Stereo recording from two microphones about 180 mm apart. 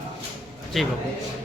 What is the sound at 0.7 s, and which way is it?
Speech, centre (ahead or behind).